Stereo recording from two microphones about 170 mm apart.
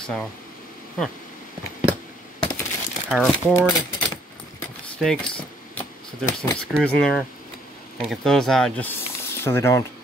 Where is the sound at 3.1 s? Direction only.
5° right (ahead or behind).